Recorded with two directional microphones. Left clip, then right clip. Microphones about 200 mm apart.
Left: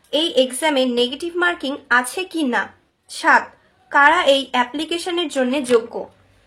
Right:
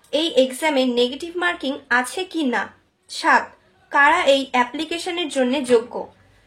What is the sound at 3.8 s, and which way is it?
A woman's voice, 20° left (ahead or behind).